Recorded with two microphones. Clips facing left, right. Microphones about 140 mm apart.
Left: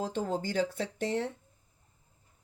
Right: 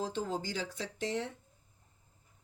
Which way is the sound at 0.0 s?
55° left (ahead or behind).